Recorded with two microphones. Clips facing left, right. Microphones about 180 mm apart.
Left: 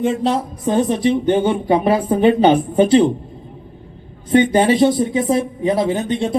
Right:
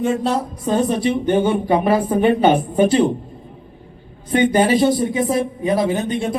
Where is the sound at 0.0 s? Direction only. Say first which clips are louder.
Left 1 dB; 20° left (ahead or behind).